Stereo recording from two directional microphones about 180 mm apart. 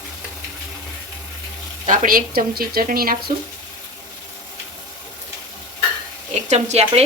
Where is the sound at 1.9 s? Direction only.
50° right (ahead or behind).